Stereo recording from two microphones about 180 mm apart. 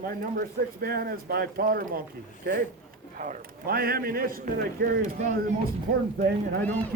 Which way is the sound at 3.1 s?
50° right (ahead or behind).